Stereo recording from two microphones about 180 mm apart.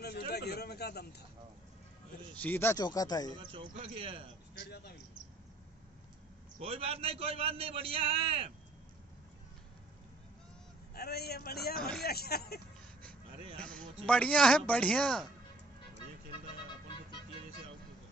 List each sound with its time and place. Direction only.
0.0 s a sound: 60° left (ahead or behind)
2.3 s speech: 10° left (ahead or behind)
3.3 s speech: 30° right (ahead or behind)
6.6 s a man's voice: 30° right (ahead or behind)
11.0 s a man's voice: 60° left (ahead or behind)
11.7 s speech: 5° left (ahead or behind)
12.0 s a man's voice: 60° left (ahead or behind)
13.6 s a man's voice: 5° left (ahead or behind)